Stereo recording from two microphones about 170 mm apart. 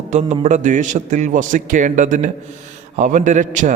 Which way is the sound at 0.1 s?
40° right (ahead or behind).